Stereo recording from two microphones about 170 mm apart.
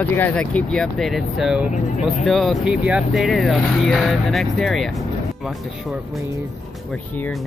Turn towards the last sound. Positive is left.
turn(degrees=0)  # may be behind; listen again after turning